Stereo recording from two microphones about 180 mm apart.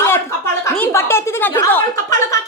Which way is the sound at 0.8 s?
10° left (ahead or behind).